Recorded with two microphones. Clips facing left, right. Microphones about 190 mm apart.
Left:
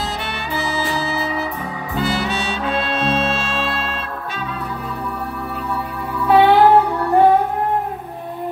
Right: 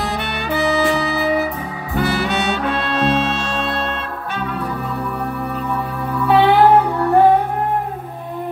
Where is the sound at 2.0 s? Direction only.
60° right (ahead or behind).